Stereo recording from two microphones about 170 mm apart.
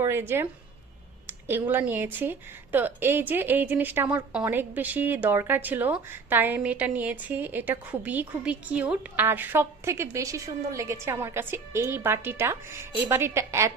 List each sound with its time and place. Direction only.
0.0 s speech: 15° right (ahead or behind)